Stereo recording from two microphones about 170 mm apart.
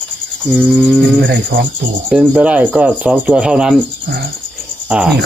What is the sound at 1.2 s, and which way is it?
Cricket, 80° right.